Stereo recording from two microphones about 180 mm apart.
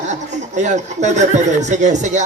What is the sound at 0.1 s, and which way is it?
Speech, 40° right (ahead or behind).